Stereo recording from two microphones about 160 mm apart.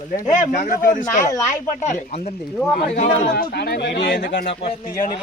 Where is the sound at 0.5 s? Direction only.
55° left (ahead or behind).